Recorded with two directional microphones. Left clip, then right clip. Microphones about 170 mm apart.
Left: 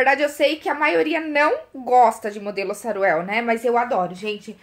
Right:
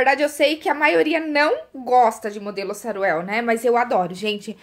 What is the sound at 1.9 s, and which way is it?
A woman's voice, 15° right (ahead or behind).